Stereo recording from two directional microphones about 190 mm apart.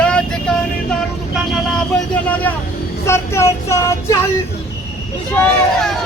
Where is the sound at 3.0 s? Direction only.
15° left (ahead or behind).